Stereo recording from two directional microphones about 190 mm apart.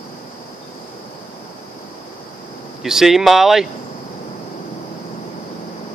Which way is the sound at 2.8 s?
Centre (ahead or behind).